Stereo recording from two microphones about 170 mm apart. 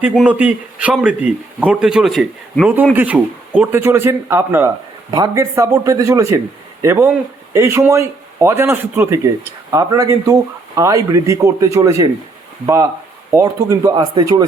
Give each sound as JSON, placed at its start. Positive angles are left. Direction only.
{"t": 0.0, "sound": "a man's voice", "side_deg": -10}